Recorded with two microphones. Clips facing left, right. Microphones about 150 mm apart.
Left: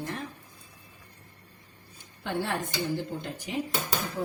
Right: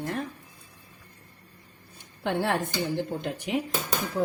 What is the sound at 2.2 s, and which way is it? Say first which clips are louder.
A woman's voice: right 4 dB; 60° right (ahead or behind).